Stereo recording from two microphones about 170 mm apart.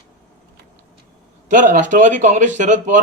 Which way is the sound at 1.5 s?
50° right (ahead or behind).